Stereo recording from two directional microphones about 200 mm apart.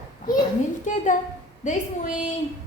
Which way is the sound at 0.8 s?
40° left (ahead or behind).